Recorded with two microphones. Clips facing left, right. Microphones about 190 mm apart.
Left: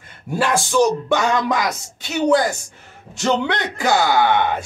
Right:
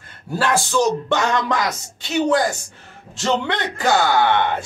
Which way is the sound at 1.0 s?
5° left (ahead or behind).